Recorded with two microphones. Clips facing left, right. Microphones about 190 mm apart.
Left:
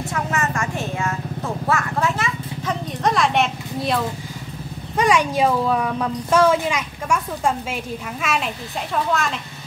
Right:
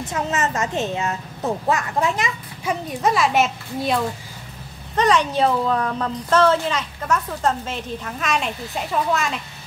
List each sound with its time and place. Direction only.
0.0 s speech: 20° right (ahead or behind); by 4.0 s centre (ahead or behind)
4.9 s a woman's voice: 10° left (ahead or behind)